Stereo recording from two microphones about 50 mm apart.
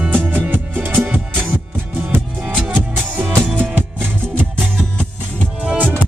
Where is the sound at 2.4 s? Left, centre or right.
Right.